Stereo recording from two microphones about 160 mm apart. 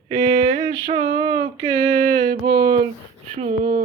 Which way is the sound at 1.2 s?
20° right (ahead or behind).